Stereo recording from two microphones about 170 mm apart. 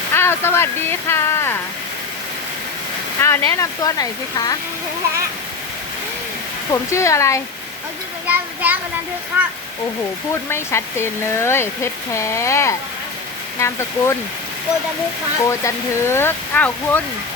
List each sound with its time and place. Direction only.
0.1 s speech: 15° left (ahead or behind)
3.2 s speech: 15° left (ahead or behind)
6.9 s speech: 15° left (ahead or behind)
8.3 s a child's voice: 10° right (ahead or behind)
10.5 s speech: 15° left (ahead or behind)
15.4 s speech: 15° left (ahead or behind)